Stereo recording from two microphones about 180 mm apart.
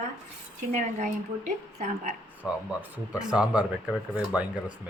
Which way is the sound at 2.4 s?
10° right (ahead or behind).